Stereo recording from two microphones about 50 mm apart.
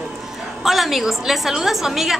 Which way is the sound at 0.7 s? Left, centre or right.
Centre.